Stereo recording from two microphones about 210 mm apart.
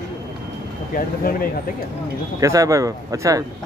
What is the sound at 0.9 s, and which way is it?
Speech, 45° left (ahead or behind).